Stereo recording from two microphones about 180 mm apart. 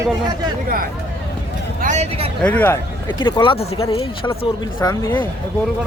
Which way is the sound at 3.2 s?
25° left (ahead or behind).